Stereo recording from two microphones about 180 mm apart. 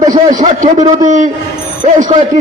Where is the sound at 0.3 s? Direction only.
25° right (ahead or behind).